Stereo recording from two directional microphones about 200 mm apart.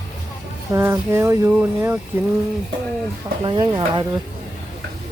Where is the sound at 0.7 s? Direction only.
15° right (ahead or behind).